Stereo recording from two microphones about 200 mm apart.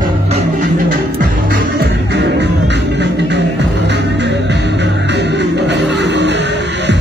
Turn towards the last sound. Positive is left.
turn(degrees=-60)  # may be behind; listen again after turning